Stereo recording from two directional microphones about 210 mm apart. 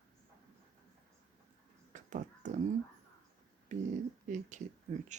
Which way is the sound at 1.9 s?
35° right (ahead or behind).